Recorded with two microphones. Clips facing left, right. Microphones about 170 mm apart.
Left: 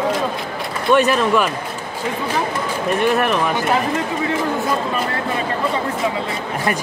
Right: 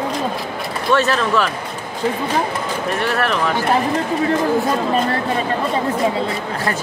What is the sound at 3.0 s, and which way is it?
Speech, 20° left (ahead or behind).